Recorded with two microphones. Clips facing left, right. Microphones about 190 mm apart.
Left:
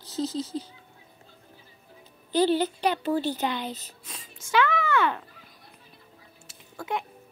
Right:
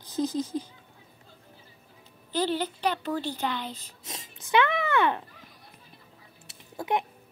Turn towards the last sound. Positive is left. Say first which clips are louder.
# right 3 dB
turn(degrees=-20)  # may be behind; listen again after turning